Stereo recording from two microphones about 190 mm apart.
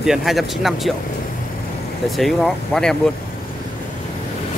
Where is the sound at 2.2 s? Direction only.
Centre (ahead or behind).